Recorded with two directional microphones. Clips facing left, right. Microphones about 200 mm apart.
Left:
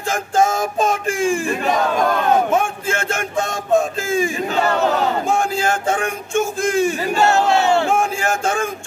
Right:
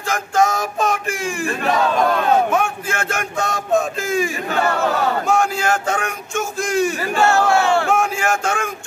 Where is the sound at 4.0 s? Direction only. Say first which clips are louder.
Left 1 dB; 25° left (ahead or behind).